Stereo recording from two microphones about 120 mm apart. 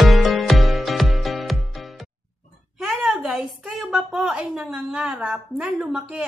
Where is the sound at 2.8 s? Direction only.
Centre (ahead or behind).